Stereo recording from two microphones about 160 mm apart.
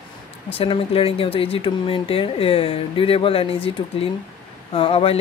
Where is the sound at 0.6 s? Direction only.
35° left (ahead or behind).